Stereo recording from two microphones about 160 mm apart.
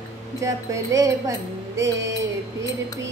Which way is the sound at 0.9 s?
20° right (ahead or behind).